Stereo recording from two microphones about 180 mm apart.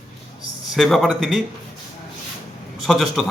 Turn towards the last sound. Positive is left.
turn(degrees=0)  # may be behind; listen again after turning